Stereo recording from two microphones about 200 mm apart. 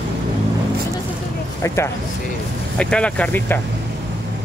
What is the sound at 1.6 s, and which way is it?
Speech, 15° left (ahead or behind).